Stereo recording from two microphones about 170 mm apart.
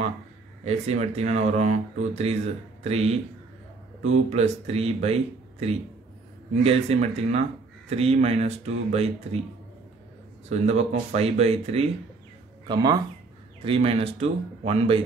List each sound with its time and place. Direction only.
0.7 s speech: 40° right (ahead or behind)
4.3 s speech: 40° right (ahead or behind)
10.5 s speech: 40° right (ahead or behind)
12.6 s speech: 25° right (ahead or behind)
13.7 s speech: 35° right (ahead or behind)